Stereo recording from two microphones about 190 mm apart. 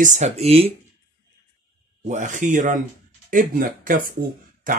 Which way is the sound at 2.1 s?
40° right (ahead or behind).